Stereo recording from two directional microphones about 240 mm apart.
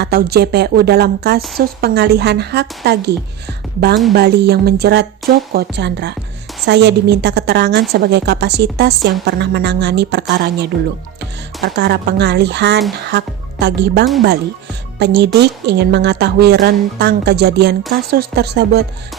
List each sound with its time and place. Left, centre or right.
0.0 s a woman's voice: right